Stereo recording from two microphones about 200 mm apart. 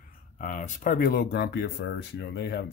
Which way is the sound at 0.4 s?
40° left (ahead or behind).